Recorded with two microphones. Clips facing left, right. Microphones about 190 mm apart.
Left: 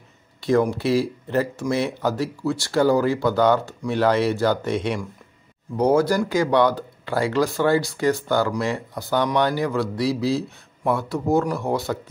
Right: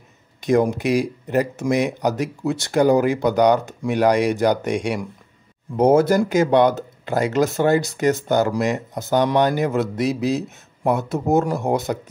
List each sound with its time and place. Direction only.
0.4 s speech: 20° right (ahead or behind)
5.8 s speech: 25° right (ahead or behind)